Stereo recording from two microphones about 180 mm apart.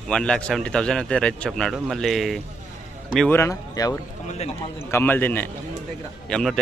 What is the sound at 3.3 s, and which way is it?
Speech, 15° left (ahead or behind).